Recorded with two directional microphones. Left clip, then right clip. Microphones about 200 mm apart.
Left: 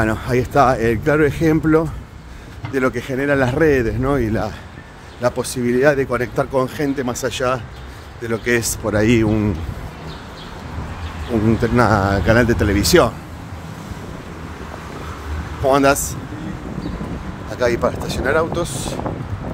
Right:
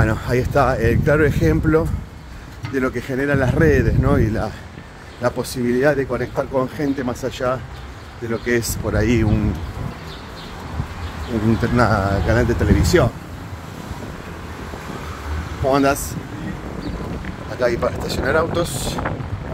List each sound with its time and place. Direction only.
0.0 s speech: 10° left (ahead or behind)
11.7 s speech: 20° left (ahead or behind)
15.6 s speech: 20° left (ahead or behind)
17.5 s a sound: 15° left (ahead or behind)
18.0 s speech: 5° left (ahead or behind)